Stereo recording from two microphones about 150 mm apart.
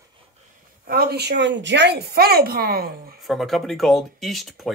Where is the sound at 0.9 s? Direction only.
90° right.